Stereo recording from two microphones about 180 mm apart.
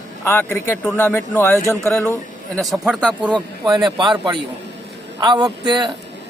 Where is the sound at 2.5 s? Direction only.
Centre (ahead or behind).